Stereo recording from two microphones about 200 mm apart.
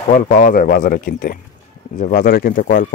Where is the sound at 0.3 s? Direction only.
45° left (ahead or behind).